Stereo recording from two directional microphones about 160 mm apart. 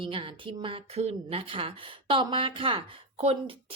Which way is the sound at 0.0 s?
30° right (ahead or behind).